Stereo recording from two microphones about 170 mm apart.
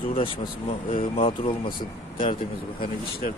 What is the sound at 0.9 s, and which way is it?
Speech, 30° left (ahead or behind).